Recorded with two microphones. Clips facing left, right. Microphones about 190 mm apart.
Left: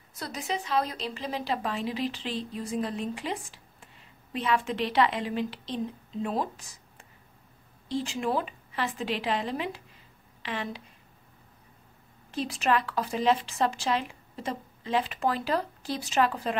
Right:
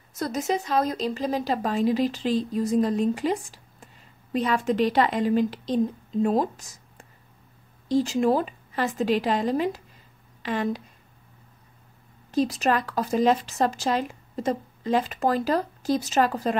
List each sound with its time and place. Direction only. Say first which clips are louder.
0.1 s a woman's voice: right 8 dB; 45° right (ahead or behind)
12.3 s a woman's voice: right 5 dB; 40° right (ahead or behind)